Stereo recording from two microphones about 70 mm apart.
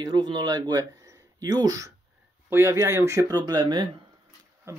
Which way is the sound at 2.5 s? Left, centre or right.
Right.